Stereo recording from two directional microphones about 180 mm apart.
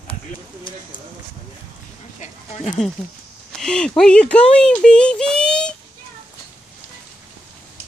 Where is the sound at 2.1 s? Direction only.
40° left (ahead or behind).